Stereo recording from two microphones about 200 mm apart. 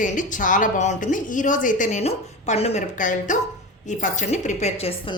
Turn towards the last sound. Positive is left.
turn(degrees=35)  # may be behind; listen again after turning